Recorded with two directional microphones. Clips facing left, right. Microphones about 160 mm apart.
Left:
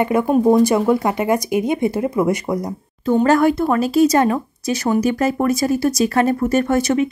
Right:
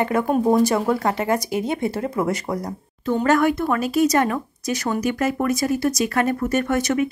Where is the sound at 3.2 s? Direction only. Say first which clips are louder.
Left 4 dB; 30° left (ahead or behind).